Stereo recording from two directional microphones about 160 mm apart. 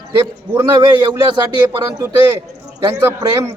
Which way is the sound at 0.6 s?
30° right (ahead or behind).